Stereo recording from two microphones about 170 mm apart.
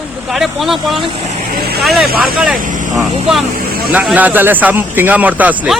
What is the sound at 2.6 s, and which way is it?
Speech, 50° right (ahead or behind).